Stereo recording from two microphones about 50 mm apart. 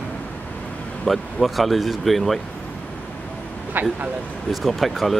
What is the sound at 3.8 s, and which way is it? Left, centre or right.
Speech, right.